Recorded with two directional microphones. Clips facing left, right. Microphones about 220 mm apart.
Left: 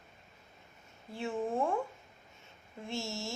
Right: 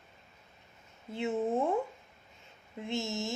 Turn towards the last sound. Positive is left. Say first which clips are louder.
# right 4 dB
turn(degrees=-20)  # may be behind; listen again after turning